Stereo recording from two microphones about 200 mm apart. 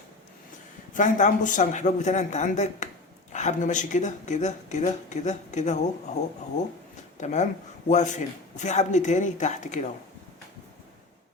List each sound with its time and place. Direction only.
0.9 s speech: 40° left (ahead or behind)
7.2 s speech: 35° left (ahead or behind)